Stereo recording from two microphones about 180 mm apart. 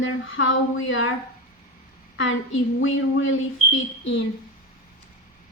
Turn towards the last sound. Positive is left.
turn(degrees=90)